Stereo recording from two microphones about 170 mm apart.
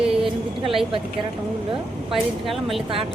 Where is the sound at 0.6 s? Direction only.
30° right (ahead or behind).